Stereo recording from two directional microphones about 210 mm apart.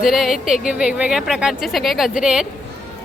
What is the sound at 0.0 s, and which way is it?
Speech, centre (ahead or behind).